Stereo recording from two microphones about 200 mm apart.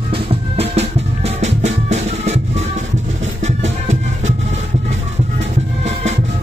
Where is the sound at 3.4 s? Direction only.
35° right (ahead or behind).